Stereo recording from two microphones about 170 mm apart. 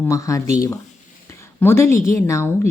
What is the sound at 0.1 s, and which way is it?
Speech, 20° left (ahead or behind).